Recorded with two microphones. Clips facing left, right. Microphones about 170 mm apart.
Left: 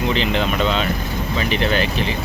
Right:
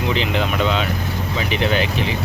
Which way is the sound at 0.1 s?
10° right (ahead or behind).